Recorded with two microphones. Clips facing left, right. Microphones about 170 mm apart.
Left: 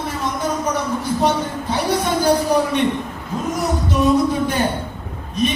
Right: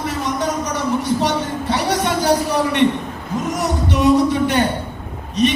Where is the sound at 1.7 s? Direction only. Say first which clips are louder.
Even; 75° right (ahead or behind).